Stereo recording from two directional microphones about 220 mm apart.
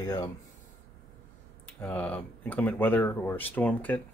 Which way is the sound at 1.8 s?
5° left (ahead or behind).